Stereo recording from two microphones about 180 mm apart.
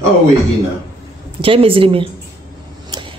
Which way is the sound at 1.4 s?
30° right (ahead or behind).